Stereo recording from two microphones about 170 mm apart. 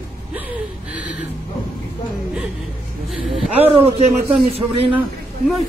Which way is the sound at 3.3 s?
35° right (ahead or behind).